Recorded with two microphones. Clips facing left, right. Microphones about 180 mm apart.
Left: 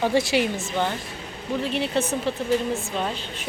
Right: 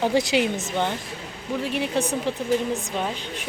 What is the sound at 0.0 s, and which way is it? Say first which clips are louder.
Speech: even; 15° right (ahead or behind).